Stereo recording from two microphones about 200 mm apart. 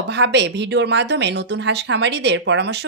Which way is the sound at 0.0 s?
60° right (ahead or behind).